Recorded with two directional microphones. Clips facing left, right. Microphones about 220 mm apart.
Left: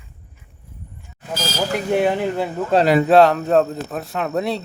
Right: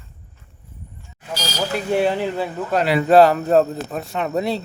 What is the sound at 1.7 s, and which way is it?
Chink, 15° left (ahead or behind).